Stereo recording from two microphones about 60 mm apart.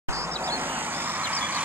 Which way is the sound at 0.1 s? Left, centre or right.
Right.